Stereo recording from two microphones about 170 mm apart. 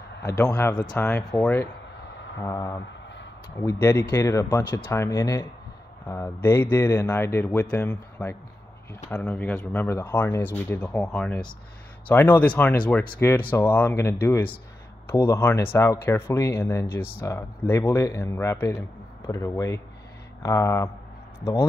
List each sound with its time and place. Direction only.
0.2 s speech: 10° left (ahead or behind)